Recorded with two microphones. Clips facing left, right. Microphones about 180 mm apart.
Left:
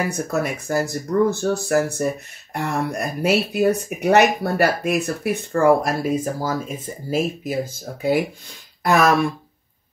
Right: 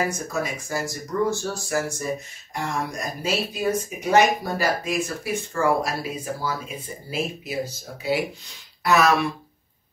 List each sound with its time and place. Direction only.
0.1 s speech: 60° left (ahead or behind)